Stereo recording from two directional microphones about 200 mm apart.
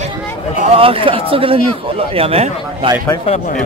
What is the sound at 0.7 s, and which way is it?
Speech, 25° right (ahead or behind).